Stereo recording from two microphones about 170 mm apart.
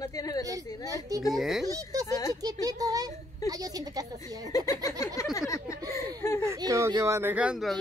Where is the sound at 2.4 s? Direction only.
20° right (ahead or behind).